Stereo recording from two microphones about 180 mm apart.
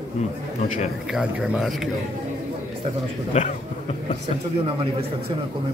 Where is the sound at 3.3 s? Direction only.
40° left (ahead or behind).